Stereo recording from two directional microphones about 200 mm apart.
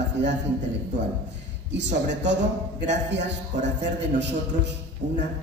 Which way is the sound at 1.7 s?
60° right (ahead or behind).